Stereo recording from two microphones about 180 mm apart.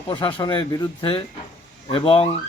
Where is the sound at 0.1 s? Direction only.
25° left (ahead or behind).